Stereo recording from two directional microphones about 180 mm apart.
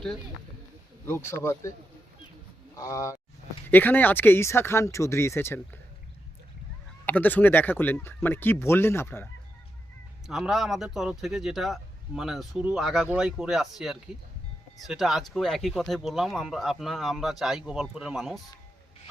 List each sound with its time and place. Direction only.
1.0 s speech: 15° left (ahead or behind)
2.7 s speech: 20° left (ahead or behind)
7.0 s speech: 10° left (ahead or behind)
10.2 s speech: centre (ahead or behind)